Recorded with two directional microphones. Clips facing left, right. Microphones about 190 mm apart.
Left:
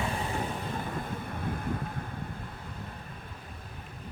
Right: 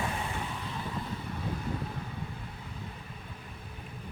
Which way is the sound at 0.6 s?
50° left (ahead or behind).